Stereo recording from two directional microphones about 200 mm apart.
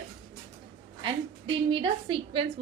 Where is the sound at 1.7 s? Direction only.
25° right (ahead or behind).